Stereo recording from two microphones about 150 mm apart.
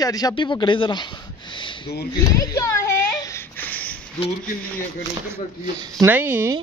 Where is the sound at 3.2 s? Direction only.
20° left (ahead or behind).